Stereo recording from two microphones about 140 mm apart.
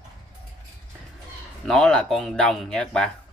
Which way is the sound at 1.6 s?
5° left (ahead or behind).